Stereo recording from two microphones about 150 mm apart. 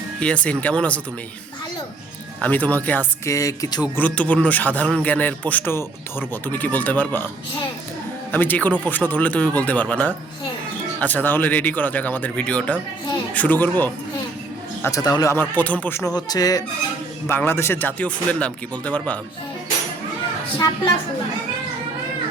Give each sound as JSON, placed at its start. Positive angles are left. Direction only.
{"t": 0.2, "sound": "speech", "side_deg": 10}
{"t": 2.4, "sound": "speech", "side_deg": 10}
{"t": 3.3, "sound": "speech", "side_deg": 20}
{"t": 3.9, "sound": "speech", "side_deg": 10}
{"t": 8.3, "sound": "speech", "side_deg": 10}
{"t": 17.2, "sound": "speech", "side_deg": 15}
{"t": 20.6, "sound": "speech", "side_deg": 25}